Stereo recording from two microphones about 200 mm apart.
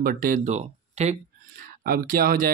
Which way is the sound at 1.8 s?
45° right (ahead or behind).